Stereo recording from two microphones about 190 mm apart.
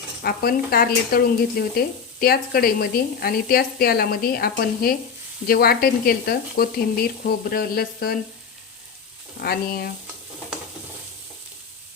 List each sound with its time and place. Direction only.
0.2 s a woman's voice: 55° left (ahead or behind)
9.4 s a woman's voice: 55° left (ahead or behind)